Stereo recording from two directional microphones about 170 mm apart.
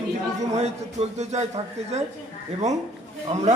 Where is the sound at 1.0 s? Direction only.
40° right (ahead or behind).